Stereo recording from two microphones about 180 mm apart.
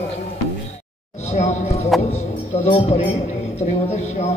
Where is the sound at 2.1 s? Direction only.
40° left (ahead or behind).